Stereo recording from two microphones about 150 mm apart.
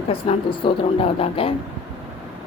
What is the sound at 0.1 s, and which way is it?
A woman's voice, 40° left (ahead or behind).